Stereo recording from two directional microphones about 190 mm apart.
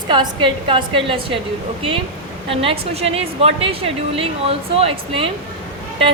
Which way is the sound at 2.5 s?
30° right (ahead or behind).